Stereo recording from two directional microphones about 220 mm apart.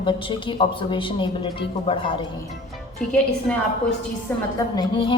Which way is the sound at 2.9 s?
5° left (ahead or behind).